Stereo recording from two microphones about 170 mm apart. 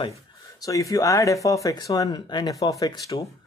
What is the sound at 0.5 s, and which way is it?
A man's voice, 20° left (ahead or behind).